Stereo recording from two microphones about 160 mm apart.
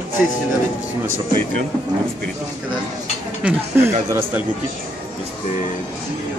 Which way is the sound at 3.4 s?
5° right (ahead or behind).